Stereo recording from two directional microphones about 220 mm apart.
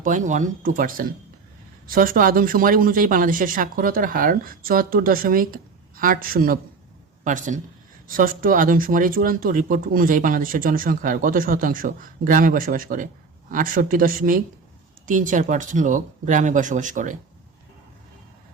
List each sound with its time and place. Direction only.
0.0 s speech: 35° right (ahead or behind)